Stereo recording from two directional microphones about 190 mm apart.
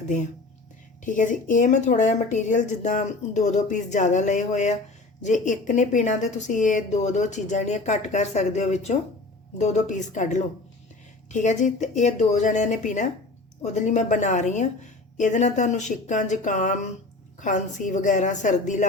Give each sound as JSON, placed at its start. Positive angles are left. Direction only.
{"t": 1.0, "sound": "speech", "side_deg": 40}